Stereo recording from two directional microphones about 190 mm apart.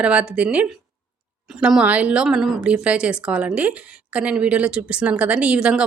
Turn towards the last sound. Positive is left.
turn(degrees=-5)  # may be behind; listen again after turning